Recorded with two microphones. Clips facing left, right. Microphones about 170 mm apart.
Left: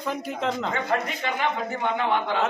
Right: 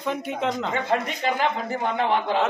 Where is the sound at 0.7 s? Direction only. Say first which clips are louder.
Right 1 dB; 30° right (ahead or behind).